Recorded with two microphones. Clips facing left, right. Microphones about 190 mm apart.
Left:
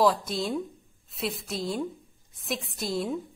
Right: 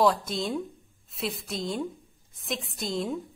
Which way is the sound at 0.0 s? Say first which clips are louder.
Even; centre (ahead or behind).